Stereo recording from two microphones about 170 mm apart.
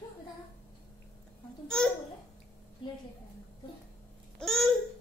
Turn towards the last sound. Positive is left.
turn(degrees=0)  # may be behind; listen again after turning